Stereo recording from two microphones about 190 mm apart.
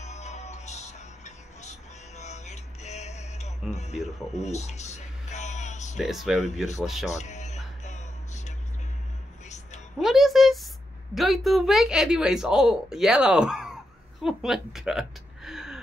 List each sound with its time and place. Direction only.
0.0 s music: 35° left (ahead or behind)
4.3 s a sound: 35° left (ahead or behind)
5.9 s speech: centre (ahead or behind)
7.1 s music: 40° left (ahead or behind)
9.9 s speech: centre (ahead or behind)
14.2 s a sound: centre (ahead or behind)